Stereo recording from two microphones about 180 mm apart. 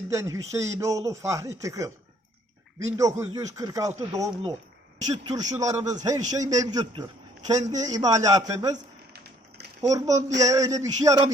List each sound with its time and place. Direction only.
0.1 s a man's voice: 15° right (ahead or behind)
9.8 s a man's voice: 20° right (ahead or behind)